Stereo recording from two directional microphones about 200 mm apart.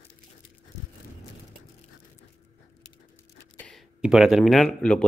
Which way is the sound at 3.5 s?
Centre (ahead or behind).